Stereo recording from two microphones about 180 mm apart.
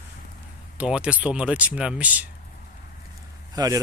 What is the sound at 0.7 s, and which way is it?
Speech, 5° right (ahead or behind).